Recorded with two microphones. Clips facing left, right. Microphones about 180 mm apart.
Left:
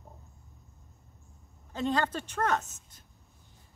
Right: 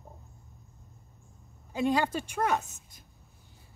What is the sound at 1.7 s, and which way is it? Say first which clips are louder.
A woman's voice: right 2 dB; 10° right (ahead or behind).